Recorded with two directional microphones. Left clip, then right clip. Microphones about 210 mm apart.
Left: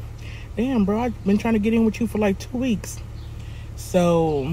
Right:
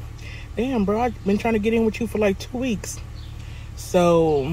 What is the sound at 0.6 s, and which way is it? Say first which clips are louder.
Speech: right 1 dB; 5° left (ahead or behind).